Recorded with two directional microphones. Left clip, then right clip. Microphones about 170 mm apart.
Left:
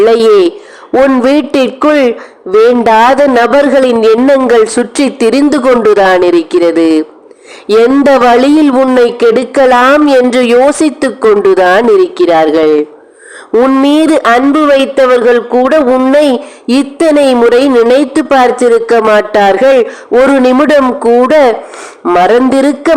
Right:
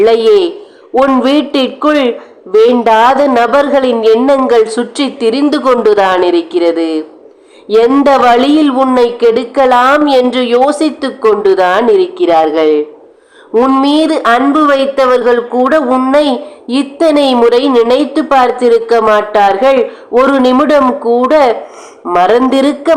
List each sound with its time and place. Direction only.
0.0 s a woman's voice: 40° left (ahead or behind)
8.0 s a woman's voice: 40° left (ahead or behind)